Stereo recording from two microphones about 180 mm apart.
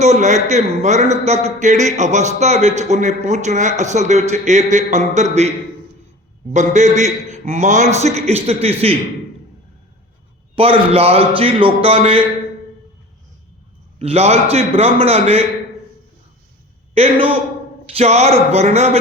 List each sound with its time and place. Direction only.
0.0 s speech: 40° right (ahead or behind)
6.5 s speech: 40° right (ahead or behind)
10.5 s speech: 30° right (ahead or behind)
14.0 s speech: 35° right (ahead or behind)
16.9 s speech: 35° right (ahead or behind)